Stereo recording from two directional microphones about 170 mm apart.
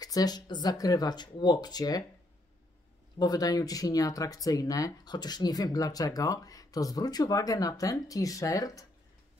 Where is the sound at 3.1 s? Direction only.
20° left (ahead or behind).